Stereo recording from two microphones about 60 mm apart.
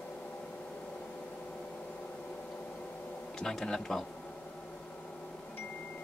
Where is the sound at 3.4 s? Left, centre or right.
Centre.